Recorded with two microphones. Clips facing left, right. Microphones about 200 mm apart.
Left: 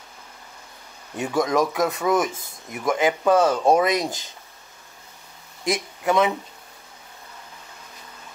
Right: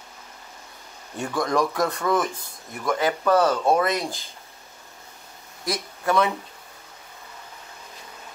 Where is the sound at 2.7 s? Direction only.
15° left (ahead or behind).